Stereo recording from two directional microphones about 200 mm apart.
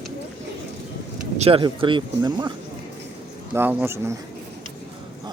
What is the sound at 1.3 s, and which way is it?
Speech, 30° right (ahead or behind).